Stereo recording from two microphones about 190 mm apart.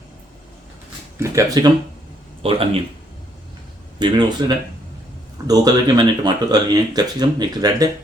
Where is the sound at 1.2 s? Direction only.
15° right (ahead or behind).